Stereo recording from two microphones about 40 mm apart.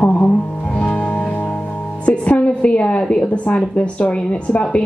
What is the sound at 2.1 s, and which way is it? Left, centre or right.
A woman's voice, left.